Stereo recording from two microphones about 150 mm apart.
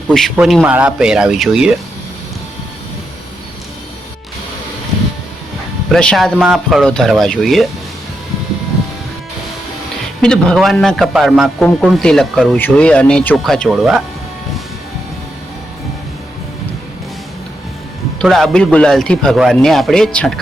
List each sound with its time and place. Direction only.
0.3 s a man's voice: centre (ahead or behind)
5.9 s a man's voice: 5° left (ahead or behind)
10.2 s a man's voice: 5° left (ahead or behind)
18.2 s a man's voice: centre (ahead or behind)